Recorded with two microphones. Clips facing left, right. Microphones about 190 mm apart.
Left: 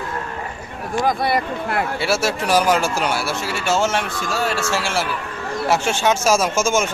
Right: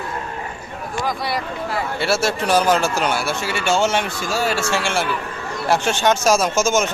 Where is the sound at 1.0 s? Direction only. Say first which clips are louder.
Left 5 dB; 55° left (ahead or behind).